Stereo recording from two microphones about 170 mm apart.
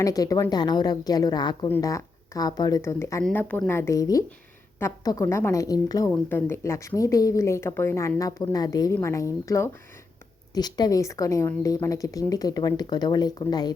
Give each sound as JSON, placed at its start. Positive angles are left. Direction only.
{"t": 0.0, "sound": "a woman's voice", "side_deg": 20}
{"t": 3.2, "sound": "a woman's voice", "side_deg": 5}